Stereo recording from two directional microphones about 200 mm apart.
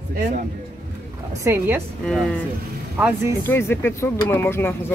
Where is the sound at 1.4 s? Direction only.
10° right (ahead or behind).